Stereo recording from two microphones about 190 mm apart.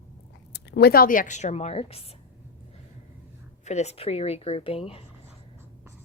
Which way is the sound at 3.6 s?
35° left (ahead or behind).